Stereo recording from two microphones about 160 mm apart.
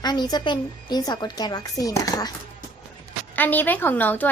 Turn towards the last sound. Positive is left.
turn(degrees=10)  # may be behind; listen again after turning